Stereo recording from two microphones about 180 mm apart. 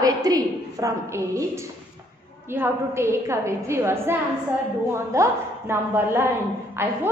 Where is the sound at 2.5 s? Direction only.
15° right (ahead or behind).